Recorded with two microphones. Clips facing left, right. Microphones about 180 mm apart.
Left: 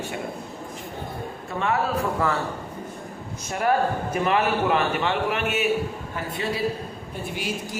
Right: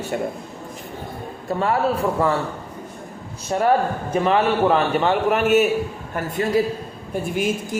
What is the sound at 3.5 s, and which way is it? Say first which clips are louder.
A man's voice: right 4 dB; 30° right (ahead or behind).